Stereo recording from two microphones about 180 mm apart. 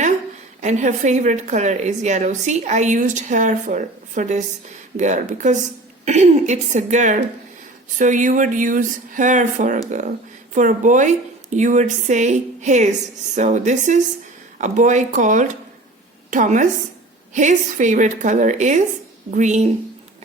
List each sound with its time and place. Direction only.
0.6 s a woman's voice: 40° right (ahead or behind)